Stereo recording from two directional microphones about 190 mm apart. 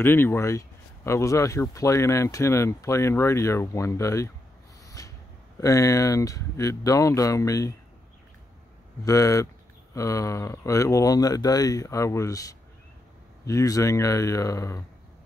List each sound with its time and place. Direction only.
0.0 s speech: 10° left (ahead or behind)
4.8 s a sound: 15° left (ahead or behind)
5.6 s speech: 15° left (ahead or behind)
9.0 s speech: 15° left (ahead or behind)